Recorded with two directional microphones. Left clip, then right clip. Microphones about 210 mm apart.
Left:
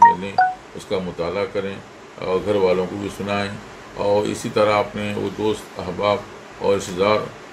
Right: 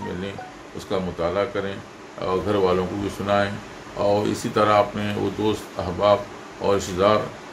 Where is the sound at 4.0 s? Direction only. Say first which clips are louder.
Left 2 dB; 5° right (ahead or behind).